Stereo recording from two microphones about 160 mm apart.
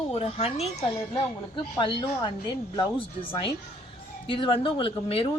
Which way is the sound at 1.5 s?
30° left (ahead or behind).